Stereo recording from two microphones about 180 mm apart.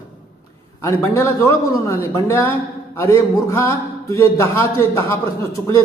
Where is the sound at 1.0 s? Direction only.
15° left (ahead or behind).